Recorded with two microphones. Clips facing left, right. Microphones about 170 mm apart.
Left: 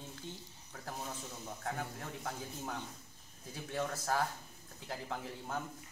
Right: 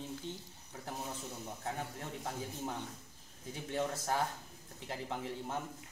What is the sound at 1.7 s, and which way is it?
A man's voice, 20° right (ahead or behind).